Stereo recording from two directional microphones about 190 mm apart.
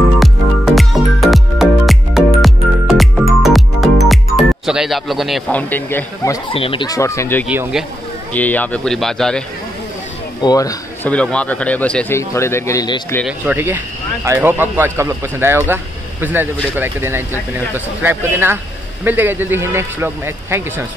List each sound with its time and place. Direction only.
0.2 s music: centre (ahead or behind)
6.5 s speech: 30° left (ahead or behind); by 7.4 s 15° left (ahead or behind)
7.4 s speech: 5° right (ahead or behind)
8.3 s speech: 10° left (ahead or behind)
10.4 s a man's voice: 20° left (ahead or behind)
11.1 s speech: 5° left (ahead or behind)
13.5 s speech: 10° right (ahead or behind)